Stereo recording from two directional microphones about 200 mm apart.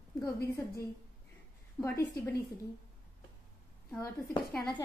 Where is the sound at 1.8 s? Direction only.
15° left (ahead or behind).